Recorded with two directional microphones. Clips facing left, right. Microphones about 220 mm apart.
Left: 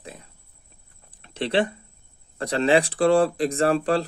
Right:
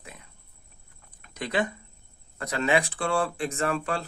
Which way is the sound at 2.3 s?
30° left (ahead or behind).